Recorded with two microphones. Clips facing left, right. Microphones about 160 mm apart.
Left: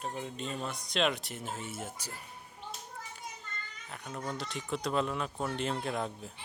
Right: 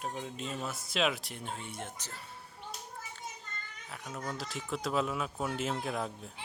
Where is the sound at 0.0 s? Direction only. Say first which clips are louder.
Left 1 dB; centre (ahead or behind).